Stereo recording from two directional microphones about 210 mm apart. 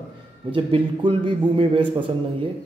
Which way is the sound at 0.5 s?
25° right (ahead or behind).